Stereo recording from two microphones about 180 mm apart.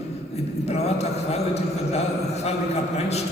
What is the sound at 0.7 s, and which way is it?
Speech, 35° left (ahead or behind).